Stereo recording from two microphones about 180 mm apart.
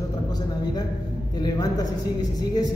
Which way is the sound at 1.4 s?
20° left (ahead or behind).